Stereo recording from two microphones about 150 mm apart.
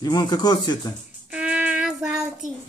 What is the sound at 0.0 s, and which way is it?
Speech, 25° left (ahead or behind).